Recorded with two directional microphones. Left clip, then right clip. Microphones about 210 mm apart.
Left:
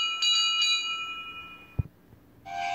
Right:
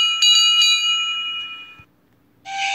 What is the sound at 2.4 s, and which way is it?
Music, 50° right (ahead or behind).